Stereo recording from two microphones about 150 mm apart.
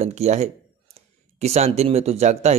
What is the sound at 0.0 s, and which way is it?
Speech, 50° right (ahead or behind).